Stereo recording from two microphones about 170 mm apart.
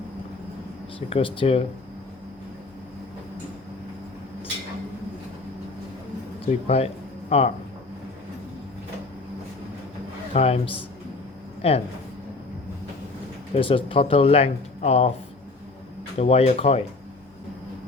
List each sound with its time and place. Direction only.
0.9 s speech: 30° left (ahead or behind)
6.4 s speech: 35° left (ahead or behind)
10.3 s speech: 35° left (ahead or behind)
13.5 s speech: 30° left (ahead or behind)
16.1 s speech: 40° left (ahead or behind)